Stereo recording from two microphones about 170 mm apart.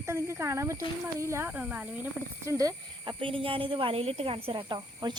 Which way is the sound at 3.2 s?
30° right (ahead or behind).